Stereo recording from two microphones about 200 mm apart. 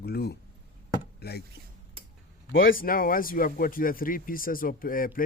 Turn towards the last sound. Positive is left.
turn(degrees=45)  # may be behind; listen again after turning